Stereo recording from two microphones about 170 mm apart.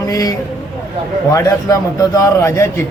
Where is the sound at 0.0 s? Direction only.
20° left (ahead or behind).